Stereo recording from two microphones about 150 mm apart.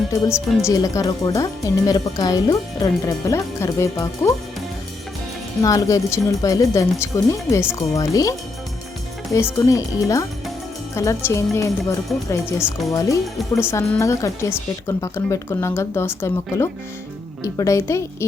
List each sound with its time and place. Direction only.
0.3 s a woman's voice: 5° right (ahead or behind)
0.7 s speech: 25° left (ahead or behind)
5.6 s speech: 20° left (ahead or behind)